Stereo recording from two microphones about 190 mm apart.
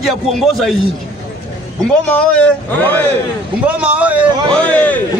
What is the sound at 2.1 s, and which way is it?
Speech, 5° left (ahead or behind).